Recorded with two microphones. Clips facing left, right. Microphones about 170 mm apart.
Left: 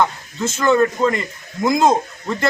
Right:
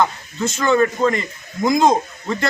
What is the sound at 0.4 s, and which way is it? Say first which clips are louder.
A man's voice: left 1 dB; centre (ahead or behind).